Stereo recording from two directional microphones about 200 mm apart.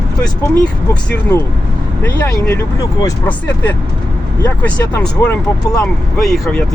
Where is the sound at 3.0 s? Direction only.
15° left (ahead or behind).